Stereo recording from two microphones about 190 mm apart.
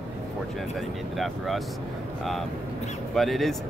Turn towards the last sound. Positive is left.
turn(degrees=0)  # may be behind; listen again after turning